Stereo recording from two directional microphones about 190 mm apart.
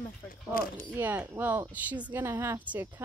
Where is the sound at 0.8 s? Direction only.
10° right (ahead or behind).